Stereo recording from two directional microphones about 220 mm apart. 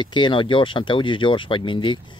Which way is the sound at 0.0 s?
20° left (ahead or behind).